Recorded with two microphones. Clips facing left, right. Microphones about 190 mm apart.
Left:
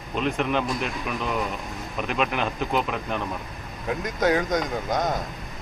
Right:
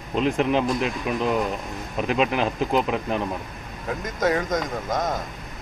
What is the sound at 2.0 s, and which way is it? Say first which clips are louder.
Speech: right 4 dB; 35° right (ahead or behind).